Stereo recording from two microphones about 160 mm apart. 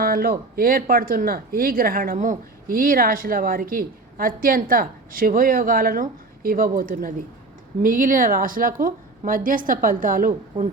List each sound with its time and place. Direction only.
0.0 s speech: 65° right (ahead or behind)